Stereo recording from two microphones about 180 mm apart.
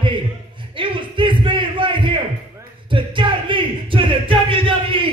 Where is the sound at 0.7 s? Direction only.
30° right (ahead or behind).